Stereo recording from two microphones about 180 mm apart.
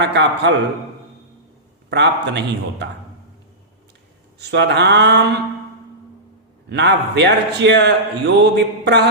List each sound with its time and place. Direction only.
0.0 s a man's voice: 75° right (ahead or behind)
1.9 s a man's voice: 70° right (ahead or behind)
4.4 s a man's voice: 70° right (ahead or behind)
6.7 s a man's voice: 75° right (ahead or behind)